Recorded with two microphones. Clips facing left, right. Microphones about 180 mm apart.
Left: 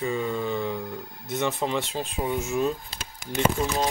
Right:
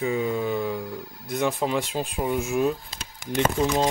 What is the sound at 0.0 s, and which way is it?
Music, 10° right (ahead or behind).